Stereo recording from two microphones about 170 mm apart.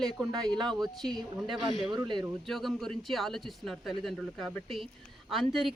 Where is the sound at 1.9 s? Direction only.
25° right (ahead or behind).